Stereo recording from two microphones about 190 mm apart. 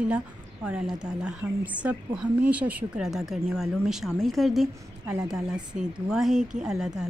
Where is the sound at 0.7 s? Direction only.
5° right (ahead or behind).